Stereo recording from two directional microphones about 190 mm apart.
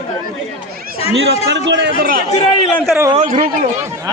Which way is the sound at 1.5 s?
65° right (ahead or behind).